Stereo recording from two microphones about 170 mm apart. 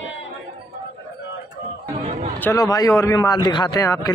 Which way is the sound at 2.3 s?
15° left (ahead or behind).